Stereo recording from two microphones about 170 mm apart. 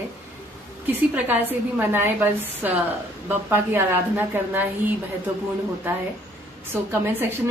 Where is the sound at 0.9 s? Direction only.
10° right (ahead or behind).